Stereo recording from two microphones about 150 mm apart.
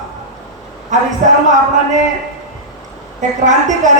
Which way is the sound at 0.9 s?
55° right (ahead or behind).